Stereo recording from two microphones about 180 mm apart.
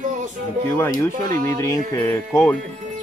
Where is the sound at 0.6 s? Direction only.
15° left (ahead or behind).